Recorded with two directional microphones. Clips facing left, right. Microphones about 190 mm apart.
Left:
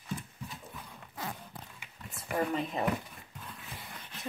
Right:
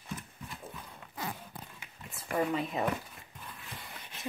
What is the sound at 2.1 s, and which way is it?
Speech, centre (ahead or behind).